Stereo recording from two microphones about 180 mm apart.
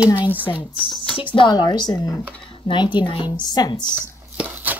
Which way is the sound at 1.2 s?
25° left (ahead or behind).